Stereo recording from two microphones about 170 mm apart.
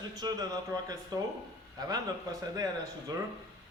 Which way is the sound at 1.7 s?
20° right (ahead or behind).